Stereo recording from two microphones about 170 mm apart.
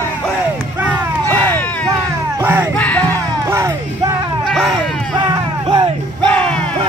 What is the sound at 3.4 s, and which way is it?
Music, 15° right (ahead or behind).